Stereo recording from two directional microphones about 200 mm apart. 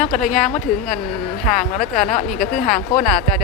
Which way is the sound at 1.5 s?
40° left (ahead or behind).